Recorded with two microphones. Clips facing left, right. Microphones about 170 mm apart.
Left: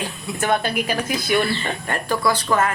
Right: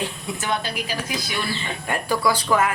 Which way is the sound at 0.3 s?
55° left (ahead or behind).